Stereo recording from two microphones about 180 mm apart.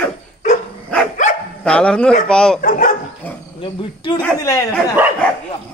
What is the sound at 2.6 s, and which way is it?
Speech, 45° left (ahead or behind).